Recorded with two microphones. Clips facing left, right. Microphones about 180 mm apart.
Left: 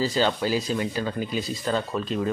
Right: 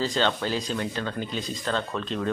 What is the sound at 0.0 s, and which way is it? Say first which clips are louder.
Speech: left 2 dB; 5° left (ahead or behind).